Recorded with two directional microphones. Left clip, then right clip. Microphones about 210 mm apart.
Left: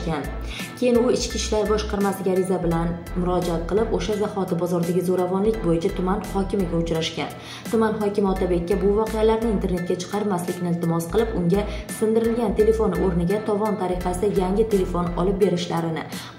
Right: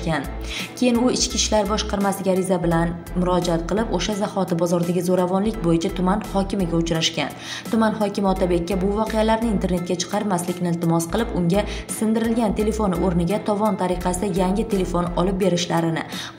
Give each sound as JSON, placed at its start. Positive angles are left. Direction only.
{"t": 0.7, "sound": "speech", "side_deg": -40}